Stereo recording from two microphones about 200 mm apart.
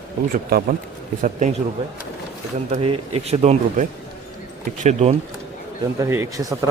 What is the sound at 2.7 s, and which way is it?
Speech, 30° right (ahead or behind).